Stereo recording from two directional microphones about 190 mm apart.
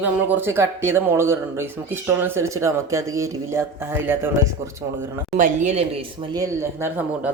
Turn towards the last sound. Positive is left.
turn(degrees=-10)  # may be behind; listen again after turning